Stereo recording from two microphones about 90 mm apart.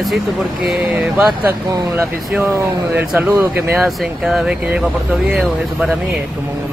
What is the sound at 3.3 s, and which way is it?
Speech, 25° right (ahead or behind).